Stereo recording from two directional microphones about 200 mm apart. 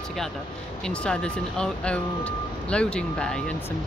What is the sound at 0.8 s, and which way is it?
Speech, 5° left (ahead or behind).